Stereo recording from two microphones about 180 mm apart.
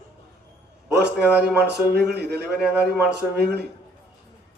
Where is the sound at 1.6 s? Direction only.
65° right (ahead or behind).